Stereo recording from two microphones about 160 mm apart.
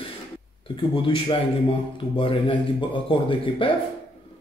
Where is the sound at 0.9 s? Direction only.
30° left (ahead or behind).